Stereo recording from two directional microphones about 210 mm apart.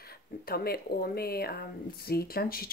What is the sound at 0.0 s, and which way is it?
Speech, 45° left (ahead or behind).